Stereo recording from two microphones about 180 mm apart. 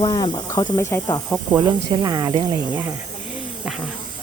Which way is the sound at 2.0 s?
20° right (ahead or behind).